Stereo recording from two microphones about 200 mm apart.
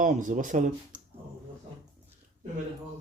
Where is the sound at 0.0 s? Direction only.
40° right (ahead or behind).